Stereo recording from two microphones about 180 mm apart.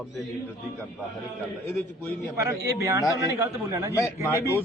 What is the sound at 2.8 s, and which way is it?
A man's voice, 20° right (ahead or behind).